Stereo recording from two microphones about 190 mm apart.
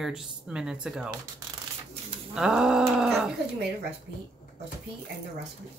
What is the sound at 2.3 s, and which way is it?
Speech, 5° right (ahead or behind).